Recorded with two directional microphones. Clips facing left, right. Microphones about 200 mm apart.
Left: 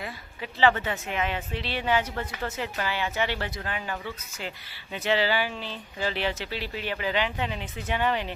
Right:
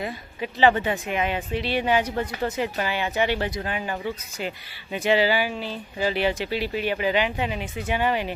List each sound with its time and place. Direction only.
0.6 s a woman's voice: 15° right (ahead or behind)